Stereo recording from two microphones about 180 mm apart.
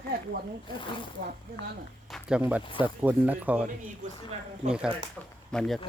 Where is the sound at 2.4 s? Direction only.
10° right (ahead or behind).